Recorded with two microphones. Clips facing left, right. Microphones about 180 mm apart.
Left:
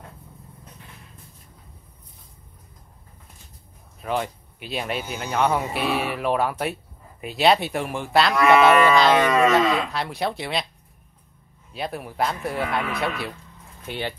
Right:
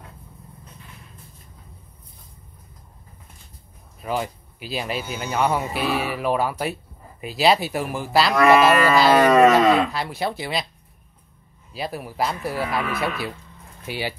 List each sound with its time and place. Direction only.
4.0 s speech: 5° right (ahead or behind)
9.1 s livestock: 45° right (ahead or behind)
9.8 s speech: centre (ahead or behind)
11.7 s speech: centre (ahead or behind)